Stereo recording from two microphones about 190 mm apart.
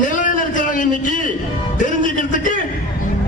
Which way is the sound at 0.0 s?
45° left (ahead or behind).